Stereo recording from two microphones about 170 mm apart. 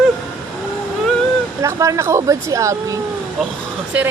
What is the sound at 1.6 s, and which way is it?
A woman's voice, 15° right (ahead or behind).